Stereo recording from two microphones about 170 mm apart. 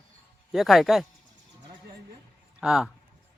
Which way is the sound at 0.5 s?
Centre (ahead or behind).